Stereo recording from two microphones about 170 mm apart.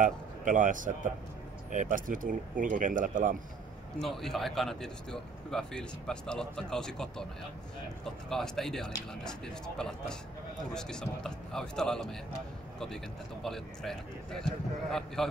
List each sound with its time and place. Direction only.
0.0 s a man's voice: 50° right (ahead or behind)
4.0 s a man's voice: centre (ahead or behind)